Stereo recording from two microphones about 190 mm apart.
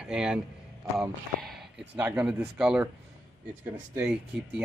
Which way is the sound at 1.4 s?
Centre (ahead or behind).